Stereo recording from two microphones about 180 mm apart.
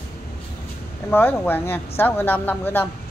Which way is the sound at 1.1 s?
10° left (ahead or behind).